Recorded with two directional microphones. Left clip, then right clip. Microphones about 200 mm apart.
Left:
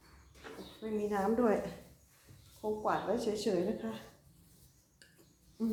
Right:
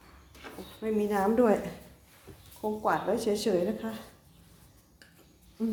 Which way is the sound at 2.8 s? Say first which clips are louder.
Right 6 dB; 40° right (ahead or behind).